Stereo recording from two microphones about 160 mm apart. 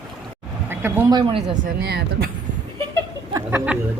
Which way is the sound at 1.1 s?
30° right (ahead or behind).